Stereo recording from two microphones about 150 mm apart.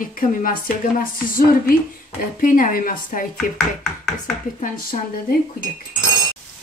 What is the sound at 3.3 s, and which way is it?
Speech, centre (ahead or behind).